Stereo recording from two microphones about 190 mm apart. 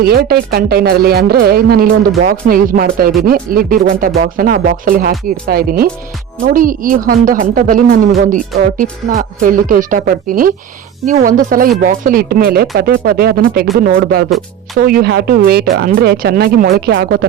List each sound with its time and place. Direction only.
0.0 s a woman's voice: 55° right (ahead or behind)